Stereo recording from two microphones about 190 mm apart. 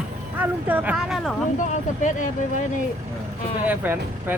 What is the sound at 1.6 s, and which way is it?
Speech, 40° left (ahead or behind).